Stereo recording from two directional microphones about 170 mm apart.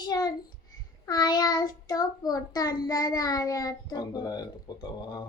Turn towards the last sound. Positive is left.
turn(degrees=25)  # may be behind; listen again after turning